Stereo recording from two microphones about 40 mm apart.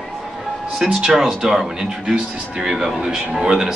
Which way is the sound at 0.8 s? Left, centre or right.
Centre.